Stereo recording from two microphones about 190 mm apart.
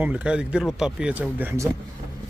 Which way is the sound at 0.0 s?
5° right (ahead or behind).